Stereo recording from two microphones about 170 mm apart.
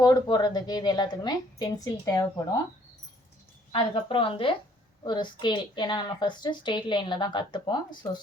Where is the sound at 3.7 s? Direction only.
30° left (ahead or behind).